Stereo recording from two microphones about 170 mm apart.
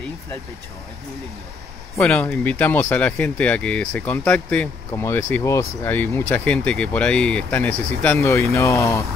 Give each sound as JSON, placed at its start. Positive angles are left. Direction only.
{"t": 2.0, "sound": "speech", "side_deg": 5}